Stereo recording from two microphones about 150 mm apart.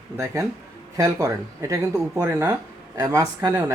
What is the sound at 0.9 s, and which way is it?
Speech, 20° right (ahead or behind).